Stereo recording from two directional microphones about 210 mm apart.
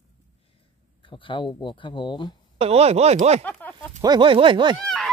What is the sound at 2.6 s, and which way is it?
Speech, 30° right (ahead or behind).